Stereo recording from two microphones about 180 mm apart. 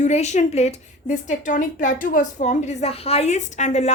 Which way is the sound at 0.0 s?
40° left (ahead or behind).